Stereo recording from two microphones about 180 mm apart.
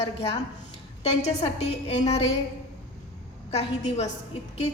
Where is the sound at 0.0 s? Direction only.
30° left (ahead or behind).